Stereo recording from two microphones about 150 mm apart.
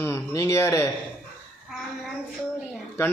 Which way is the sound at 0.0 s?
15° left (ahead or behind).